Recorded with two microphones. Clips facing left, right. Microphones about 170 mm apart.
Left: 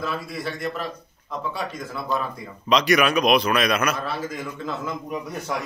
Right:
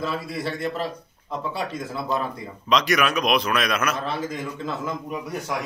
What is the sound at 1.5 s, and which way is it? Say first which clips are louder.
Speech: right 1 dB; 30° right (ahead or behind).